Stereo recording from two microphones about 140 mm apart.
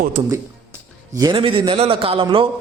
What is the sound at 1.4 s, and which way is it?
A man's voice, 40° right (ahead or behind).